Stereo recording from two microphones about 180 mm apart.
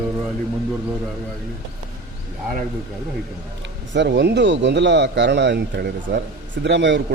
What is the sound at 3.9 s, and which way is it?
A man's voice, 75° right (ahead or behind).